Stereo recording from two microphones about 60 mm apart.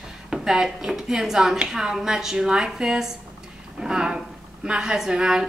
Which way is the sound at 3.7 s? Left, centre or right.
Centre.